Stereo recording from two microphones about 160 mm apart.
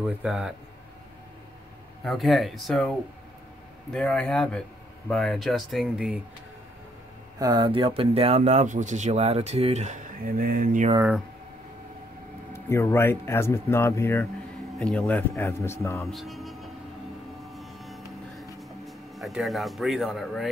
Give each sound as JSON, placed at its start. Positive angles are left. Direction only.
{"t": 0.0, "sound": "speech", "side_deg": -5}
{"t": 2.0, "sound": "speech", "side_deg": 0}
{"t": 3.9, "sound": "speech", "side_deg": 5}
{"t": 7.3, "sound": "speech", "side_deg": -25}
{"t": 10.2, "sound": "mantra", "side_deg": -60}
{"t": 12.5, "sound": "speech", "side_deg": 15}
{"t": 16.0, "sound": "music", "side_deg": 0}
{"t": 17.5, "sound": "vehicle", "side_deg": 0}
{"t": 18.6, "sound": "speech", "side_deg": 0}